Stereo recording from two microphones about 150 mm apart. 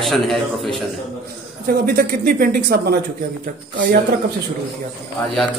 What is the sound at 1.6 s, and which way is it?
Speech, 90° right.